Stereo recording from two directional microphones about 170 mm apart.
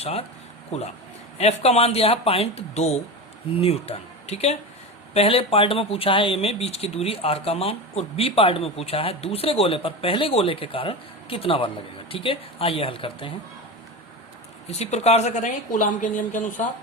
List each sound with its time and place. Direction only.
0.0 s speech: 35° left (ahead or behind)
14.7 s a woman's voice: 40° left (ahead or behind)